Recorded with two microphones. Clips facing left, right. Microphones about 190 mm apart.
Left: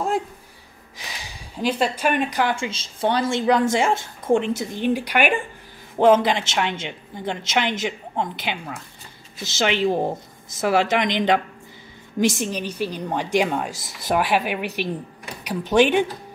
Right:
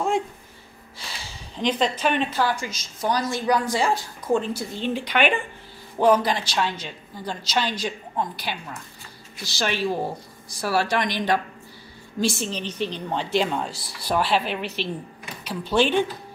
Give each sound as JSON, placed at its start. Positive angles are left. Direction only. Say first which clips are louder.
{"t": 0.9, "sound": "speech", "louder": "left 1 dB", "side_deg": 15}
{"t": 2.5, "sound": "a woman's voice", "louder": "left 3 dB", "side_deg": 30}
{"t": 5.9, "sound": "a woman's voice", "louder": "left 3 dB", "side_deg": 20}